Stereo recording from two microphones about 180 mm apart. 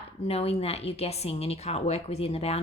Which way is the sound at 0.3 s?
35° left (ahead or behind).